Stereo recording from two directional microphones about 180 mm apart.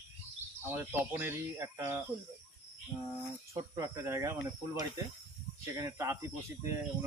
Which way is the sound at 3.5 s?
20° right (ahead or behind).